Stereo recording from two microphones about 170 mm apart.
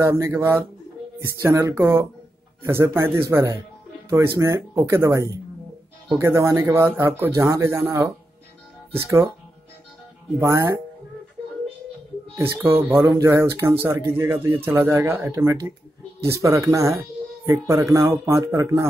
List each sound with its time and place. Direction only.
0.0 s speech: 15° right (ahead or behind)
10.4 s speech: 15° right (ahead or behind)
12.4 s speech: 15° right (ahead or behind)